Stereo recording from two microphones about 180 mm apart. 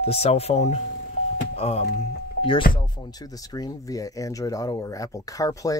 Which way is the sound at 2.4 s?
60° left (ahead or behind).